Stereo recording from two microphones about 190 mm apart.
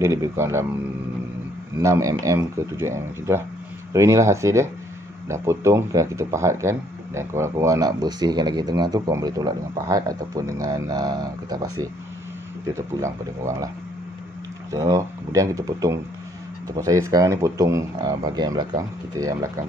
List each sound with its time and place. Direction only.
0.0 s speech: 15° right (ahead or behind)
1.8 s speech: 15° right (ahead or behind)
14.7 s speech: 15° right (ahead or behind)